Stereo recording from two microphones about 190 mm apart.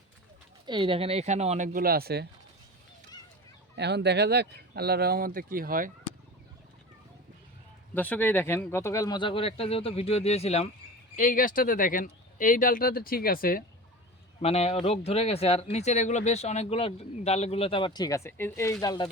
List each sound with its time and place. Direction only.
0.6 s speech: 25° right (ahead or behind); by 2.2 s 55° right (ahead or behind)
3.8 s speech: 60° right (ahead or behind)
7.9 s speech: 10° left (ahead or behind); by 10.7 s 35° left (ahead or behind)
11.2 s speech: 45° left (ahead or behind)
14.4 s speech: 30° left (ahead or behind)